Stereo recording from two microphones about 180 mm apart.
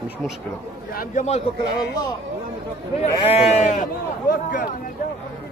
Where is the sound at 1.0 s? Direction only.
40° left (ahead or behind).